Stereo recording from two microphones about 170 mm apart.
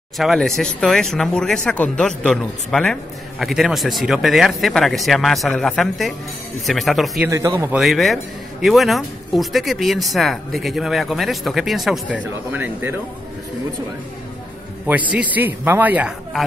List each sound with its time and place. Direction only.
0.2 s speech: centre (ahead or behind)
7.2 s a man's voice: 15° right (ahead or behind)
7.8 s speech: centre (ahead or behind)
14.9 s a man's voice: 10° right (ahead or behind)